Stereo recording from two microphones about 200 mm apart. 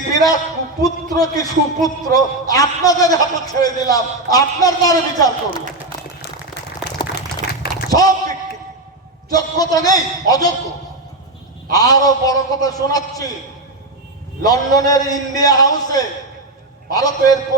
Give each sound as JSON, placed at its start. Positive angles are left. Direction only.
{"t": 0.1, "sound": "a man's voice", "side_deg": 20}
{"t": 6.9, "sound": "a sound", "side_deg": 55}
{"t": 7.9, "sound": "a sound", "side_deg": 20}
{"t": 9.3, "sound": "a man's voice", "side_deg": 20}
{"t": 11.7, "sound": "a man's voice", "side_deg": 20}
{"t": 14.4, "sound": "a man's voice", "side_deg": 20}